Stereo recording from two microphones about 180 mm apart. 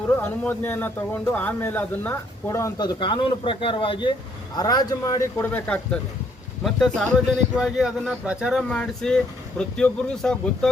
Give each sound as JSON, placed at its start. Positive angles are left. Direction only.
{"t": 0.2, "sound": "a man's voice", "side_deg": 10}
{"t": 5.4, "sound": "a man's voice", "side_deg": 10}